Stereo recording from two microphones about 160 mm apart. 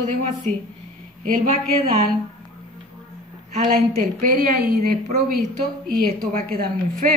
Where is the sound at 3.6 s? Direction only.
65° right (ahead or behind).